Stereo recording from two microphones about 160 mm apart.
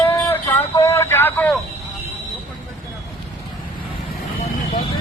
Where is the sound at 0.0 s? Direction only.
15° left (ahead or behind).